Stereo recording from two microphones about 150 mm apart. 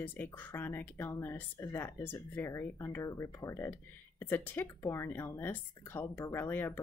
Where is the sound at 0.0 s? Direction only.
10° left (ahead or behind).